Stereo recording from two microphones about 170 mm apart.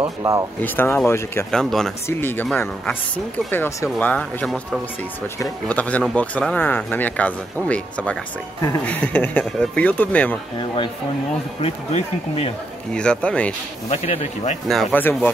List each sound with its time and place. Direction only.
0.0 s speech: 20° right (ahead or behind)
0.6 s speech: 10° left (ahead or behind)
1.5 s speech: 5° left (ahead or behind)
5.7 s speech: 10° left (ahead or behind)
11.6 s speech: 35° left (ahead or behind)
12.9 s speech: 5° left (ahead or behind)
13.8 s speech: 40° left (ahead or behind)
14.7 s speech: 5° left (ahead or behind)